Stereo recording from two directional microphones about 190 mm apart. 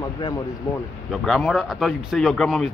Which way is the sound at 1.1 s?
Centre (ahead or behind).